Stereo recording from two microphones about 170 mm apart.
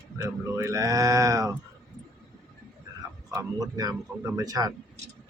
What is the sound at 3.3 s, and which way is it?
Speech, 20° right (ahead or behind).